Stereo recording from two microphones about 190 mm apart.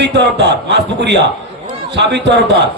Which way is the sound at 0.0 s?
65° right (ahead or behind).